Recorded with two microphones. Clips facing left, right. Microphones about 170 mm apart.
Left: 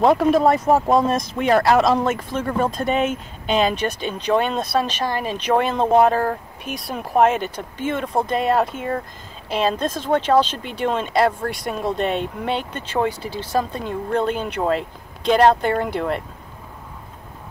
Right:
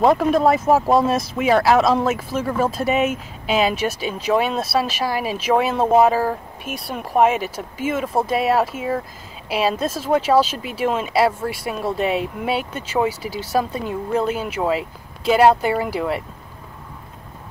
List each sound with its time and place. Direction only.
0.0 s speech: centre (ahead or behind)